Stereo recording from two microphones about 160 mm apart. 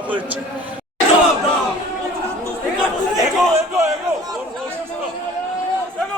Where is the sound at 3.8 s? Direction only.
20° right (ahead or behind).